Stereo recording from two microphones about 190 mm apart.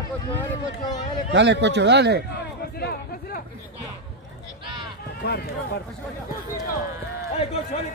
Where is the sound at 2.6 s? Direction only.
55° left (ahead or behind).